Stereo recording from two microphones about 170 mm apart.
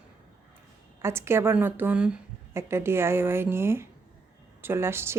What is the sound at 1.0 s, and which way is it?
Speech, 15° right (ahead or behind).